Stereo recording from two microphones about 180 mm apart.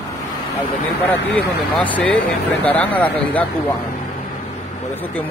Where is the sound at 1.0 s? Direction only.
10° left (ahead or behind).